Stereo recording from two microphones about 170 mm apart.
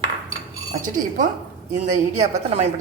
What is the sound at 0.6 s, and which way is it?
Cutlery, 25° right (ahead or behind).